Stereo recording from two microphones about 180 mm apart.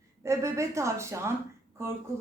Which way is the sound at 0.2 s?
15° right (ahead or behind).